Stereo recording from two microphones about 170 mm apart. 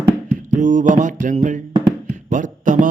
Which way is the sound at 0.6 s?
45° right (ahead or behind).